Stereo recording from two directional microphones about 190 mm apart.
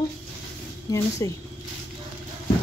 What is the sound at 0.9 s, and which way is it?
Speech, 15° left (ahead or behind).